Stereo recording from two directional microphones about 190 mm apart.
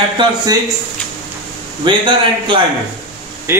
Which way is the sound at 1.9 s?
25° right (ahead or behind).